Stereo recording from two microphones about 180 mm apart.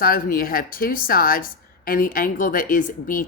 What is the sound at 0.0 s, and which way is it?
A woman's voice, 55° left (ahead or behind).